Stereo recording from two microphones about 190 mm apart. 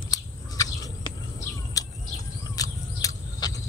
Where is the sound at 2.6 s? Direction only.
20° left (ahead or behind).